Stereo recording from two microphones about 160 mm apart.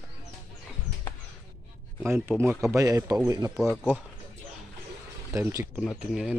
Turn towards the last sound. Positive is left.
turn(degrees=-5)  # may be behind; listen again after turning